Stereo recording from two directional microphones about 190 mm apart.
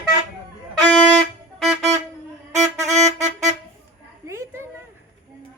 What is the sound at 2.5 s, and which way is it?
Music, 35° right (ahead or behind).